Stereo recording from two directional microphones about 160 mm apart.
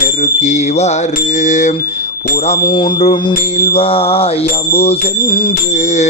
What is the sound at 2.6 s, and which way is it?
Music, 30° left (ahead or behind).